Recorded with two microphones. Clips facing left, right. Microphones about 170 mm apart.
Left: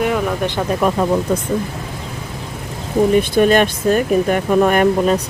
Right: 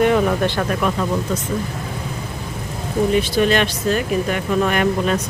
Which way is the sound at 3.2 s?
50° left (ahead or behind).